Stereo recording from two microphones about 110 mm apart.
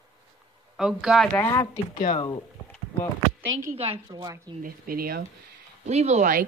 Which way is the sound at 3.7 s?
60° right (ahead or behind).